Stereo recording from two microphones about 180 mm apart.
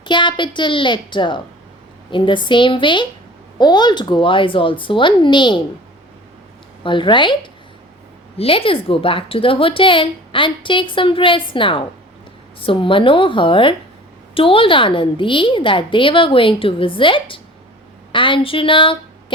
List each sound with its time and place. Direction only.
0.0 s a woman's voice: 25° left (ahead or behind)
6.8 s a woman's voice: 25° left (ahead or behind)